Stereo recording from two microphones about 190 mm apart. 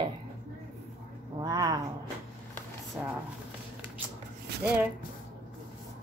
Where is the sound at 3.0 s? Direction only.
5° right (ahead or behind).